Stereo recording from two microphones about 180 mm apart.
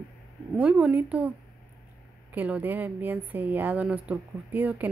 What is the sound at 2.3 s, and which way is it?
Speech, 10° right (ahead or behind).